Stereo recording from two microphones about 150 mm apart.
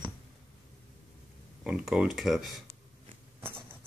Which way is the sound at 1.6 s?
5° right (ahead or behind).